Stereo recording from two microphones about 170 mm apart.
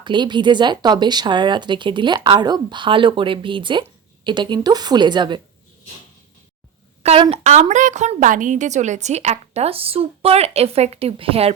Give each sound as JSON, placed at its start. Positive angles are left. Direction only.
{"t": 0.0, "sound": "speech", "side_deg": -25}
{"t": 7.0, "sound": "a woman's voice", "side_deg": -35}